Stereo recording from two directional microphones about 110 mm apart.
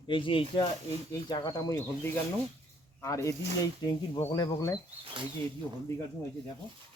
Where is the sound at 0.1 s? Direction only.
50° left (ahead or behind).